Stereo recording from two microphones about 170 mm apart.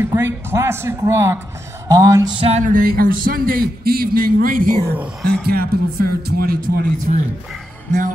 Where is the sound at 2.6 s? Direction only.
55° right (ahead or behind).